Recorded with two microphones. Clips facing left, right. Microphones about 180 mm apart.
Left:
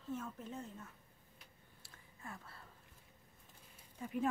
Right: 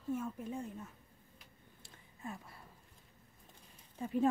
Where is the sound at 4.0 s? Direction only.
30° right (ahead or behind).